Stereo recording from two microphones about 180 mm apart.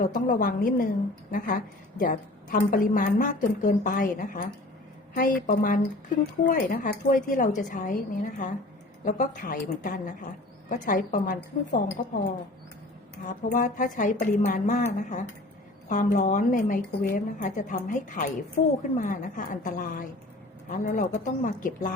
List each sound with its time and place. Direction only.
0.0 s a woman's voice: 50° left (ahead or behind)
13.2 s a woman's voice: 45° left (ahead or behind)
15.9 s a woman's voice: 45° left (ahead or behind)